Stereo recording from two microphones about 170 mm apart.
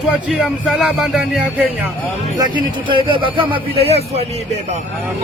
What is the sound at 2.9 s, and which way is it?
Speech, 30° right (ahead or behind).